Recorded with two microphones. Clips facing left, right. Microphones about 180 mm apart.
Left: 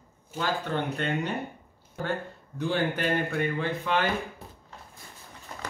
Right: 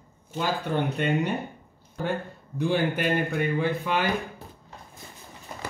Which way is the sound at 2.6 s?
10° right (ahead or behind).